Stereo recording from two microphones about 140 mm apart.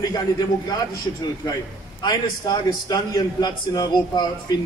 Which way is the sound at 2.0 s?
30° left (ahead or behind).